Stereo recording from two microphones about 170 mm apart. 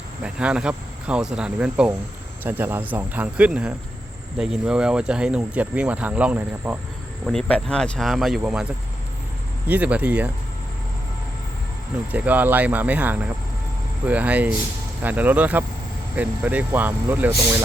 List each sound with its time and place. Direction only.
0.2 s speech: 5° right (ahead or behind)
7.3 s speech: 5° left (ahead or behind)
9.6 s speech: 10° right (ahead or behind)
12.1 s speech: 10° right (ahead or behind)